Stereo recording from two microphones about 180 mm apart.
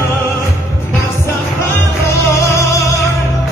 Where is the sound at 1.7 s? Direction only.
15° left (ahead or behind).